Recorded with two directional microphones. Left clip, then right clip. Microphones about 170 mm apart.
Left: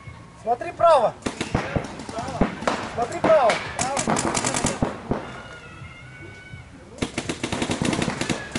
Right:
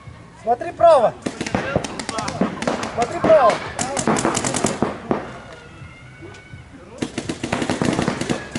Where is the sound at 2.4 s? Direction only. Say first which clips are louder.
Left 1 dB; centre (ahead or behind).